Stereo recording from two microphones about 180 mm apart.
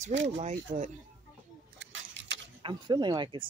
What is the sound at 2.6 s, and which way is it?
Speech, 25° right (ahead or behind).